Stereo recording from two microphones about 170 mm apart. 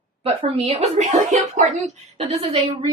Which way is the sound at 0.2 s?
35° right (ahead or behind).